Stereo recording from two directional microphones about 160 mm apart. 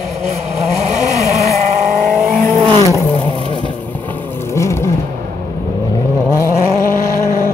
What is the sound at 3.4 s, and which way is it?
Vehicle, 30° right (ahead or behind).